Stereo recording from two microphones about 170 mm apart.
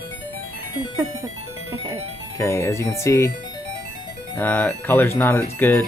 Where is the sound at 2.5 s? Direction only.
15° left (ahead or behind).